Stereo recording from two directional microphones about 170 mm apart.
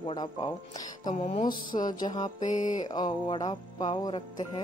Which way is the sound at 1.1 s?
40° left (ahead or behind).